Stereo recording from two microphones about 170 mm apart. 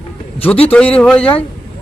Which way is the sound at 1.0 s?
5° left (ahead or behind).